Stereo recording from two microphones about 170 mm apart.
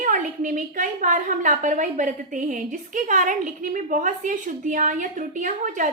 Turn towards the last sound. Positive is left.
turn(degrees=-50)  # may be behind; listen again after turning